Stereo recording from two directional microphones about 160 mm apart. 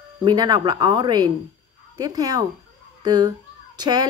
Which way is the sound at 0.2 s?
25° right (ahead or behind).